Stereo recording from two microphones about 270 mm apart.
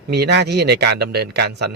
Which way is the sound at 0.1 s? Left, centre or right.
Right.